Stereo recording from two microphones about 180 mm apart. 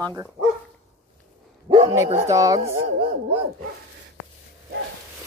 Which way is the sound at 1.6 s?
25° right (ahead or behind).